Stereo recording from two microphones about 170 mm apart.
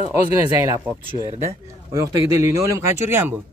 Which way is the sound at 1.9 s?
20° right (ahead or behind).